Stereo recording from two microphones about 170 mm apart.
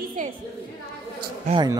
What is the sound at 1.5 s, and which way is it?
Speech, 45° right (ahead or behind).